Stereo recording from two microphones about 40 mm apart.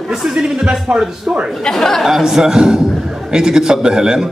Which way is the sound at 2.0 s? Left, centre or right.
Centre.